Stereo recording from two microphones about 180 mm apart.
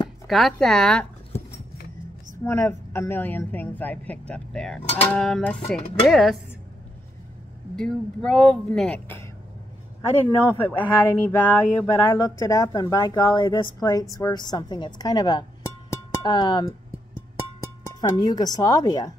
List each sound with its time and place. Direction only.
0.3 s speech: centre (ahead or behind)
2.4 s a woman's voice: 15° left (ahead or behind)
7.7 s speech: 5° left (ahead or behind)
10.4 s a woman's voice: 10° left (ahead or behind)
15.9 s music: 25° left (ahead or behind)
18.2 s a woman's voice: 25° left (ahead or behind)